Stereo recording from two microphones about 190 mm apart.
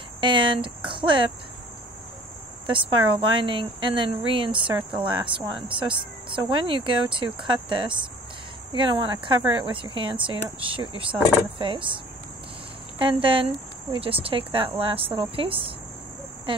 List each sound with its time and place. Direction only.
0.2 s speech: 25° right (ahead or behind)
2.6 s speech: 25° right (ahead or behind)
13.0 s speech: 30° right (ahead or behind)